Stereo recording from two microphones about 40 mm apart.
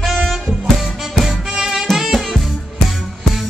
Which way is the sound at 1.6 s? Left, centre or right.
Centre.